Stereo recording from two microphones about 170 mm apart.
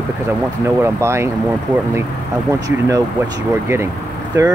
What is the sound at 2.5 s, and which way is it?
Speech, 20° right (ahead or behind).